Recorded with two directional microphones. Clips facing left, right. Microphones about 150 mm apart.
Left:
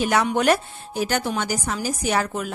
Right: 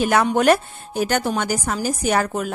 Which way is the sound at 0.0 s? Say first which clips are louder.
Right 3 dB; 50° right (ahead or behind).